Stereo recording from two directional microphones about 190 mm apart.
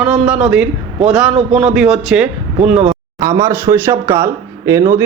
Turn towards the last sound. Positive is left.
turn(degrees=-15)  # may be behind; listen again after turning